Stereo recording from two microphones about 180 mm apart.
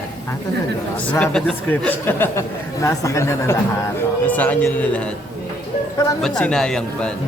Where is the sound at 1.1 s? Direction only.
5° left (ahead or behind).